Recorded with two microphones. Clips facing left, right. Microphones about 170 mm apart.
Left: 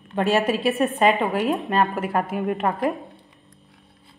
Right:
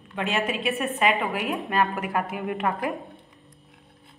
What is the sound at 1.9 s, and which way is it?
Speech, 35° left (ahead or behind).